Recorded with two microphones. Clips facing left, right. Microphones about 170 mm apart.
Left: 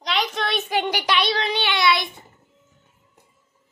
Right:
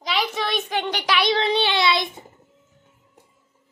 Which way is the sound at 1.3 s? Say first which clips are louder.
Right 3 dB; 25° right (ahead or behind).